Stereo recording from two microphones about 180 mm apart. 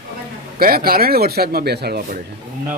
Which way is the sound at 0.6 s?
55° right (ahead or behind).